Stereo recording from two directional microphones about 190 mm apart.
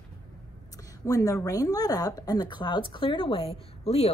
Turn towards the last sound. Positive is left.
turn(degrees=35)  # may be behind; listen again after turning